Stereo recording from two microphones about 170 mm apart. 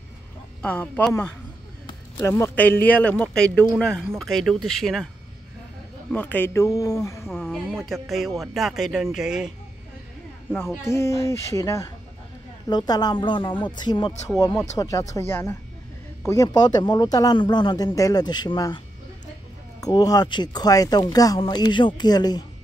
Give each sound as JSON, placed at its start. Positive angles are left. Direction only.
{"t": 0.6, "sound": "speech", "side_deg": 10}
{"t": 1.9, "sound": "speech", "side_deg": 20}
{"t": 6.1, "sound": "speech", "side_deg": 10}
{"t": 7.2, "sound": "speech", "side_deg": 0}
{"t": 10.8, "sound": "speech", "side_deg": 15}
{"t": 19.8, "sound": "speech", "side_deg": 20}